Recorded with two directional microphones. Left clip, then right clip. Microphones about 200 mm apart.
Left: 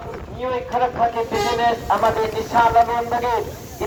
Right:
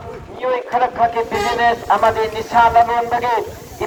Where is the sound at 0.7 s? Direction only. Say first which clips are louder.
Right 2 dB; 15° right (ahead or behind).